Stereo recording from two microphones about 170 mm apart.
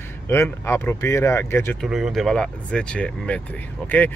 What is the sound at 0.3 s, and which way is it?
Speech, 15° left (ahead or behind).